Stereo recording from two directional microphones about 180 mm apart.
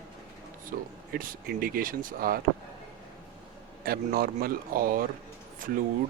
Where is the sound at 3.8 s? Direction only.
55° right (ahead or behind).